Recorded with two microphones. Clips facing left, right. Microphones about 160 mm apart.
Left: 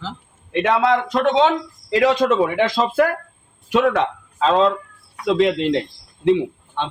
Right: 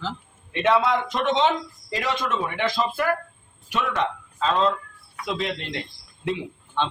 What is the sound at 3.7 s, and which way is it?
Speech, 75° left (ahead or behind).